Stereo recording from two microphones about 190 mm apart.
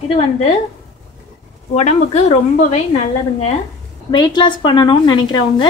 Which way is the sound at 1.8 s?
35° left (ahead or behind).